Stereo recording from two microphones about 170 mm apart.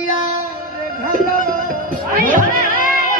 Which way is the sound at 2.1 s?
50° right (ahead or behind).